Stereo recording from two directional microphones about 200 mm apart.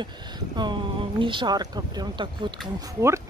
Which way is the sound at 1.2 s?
25° right (ahead or behind).